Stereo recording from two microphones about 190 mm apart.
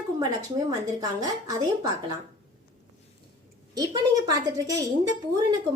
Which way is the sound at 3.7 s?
20° right (ahead or behind).